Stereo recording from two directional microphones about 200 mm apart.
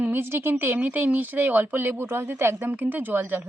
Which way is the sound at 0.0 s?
10° right (ahead or behind).